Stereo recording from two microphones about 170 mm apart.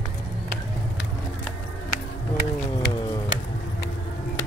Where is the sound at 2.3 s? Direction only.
70° left (ahead or behind).